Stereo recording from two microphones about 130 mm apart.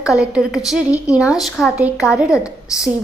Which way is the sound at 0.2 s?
5° right (ahead or behind).